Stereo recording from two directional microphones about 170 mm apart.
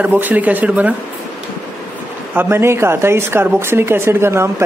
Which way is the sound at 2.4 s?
15° right (ahead or behind).